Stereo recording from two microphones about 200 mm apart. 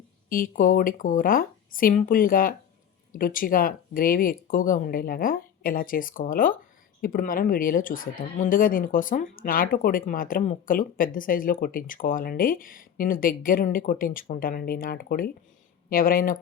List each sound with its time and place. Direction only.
0.3 s speech: 45° left (ahead or behind)